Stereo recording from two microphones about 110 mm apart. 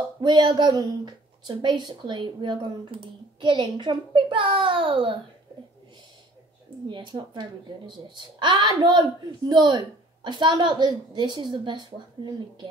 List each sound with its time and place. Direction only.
0.2 s speech: 45° right (ahead or behind)
6.9 s speech: 45° right (ahead or behind)